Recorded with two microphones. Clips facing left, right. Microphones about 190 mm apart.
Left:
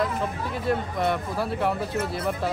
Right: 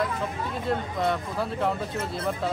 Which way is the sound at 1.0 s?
5° left (ahead or behind).